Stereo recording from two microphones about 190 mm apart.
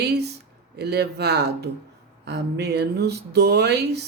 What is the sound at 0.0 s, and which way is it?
Speech, 60° right (ahead or behind).